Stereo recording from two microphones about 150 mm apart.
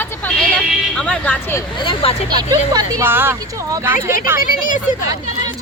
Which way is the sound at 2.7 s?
25° right (ahead or behind).